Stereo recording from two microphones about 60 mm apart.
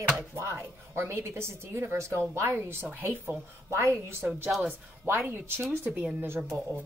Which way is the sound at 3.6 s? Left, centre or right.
Right.